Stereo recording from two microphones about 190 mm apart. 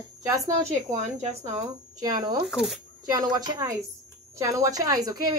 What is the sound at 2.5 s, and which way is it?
Speech, centre (ahead or behind).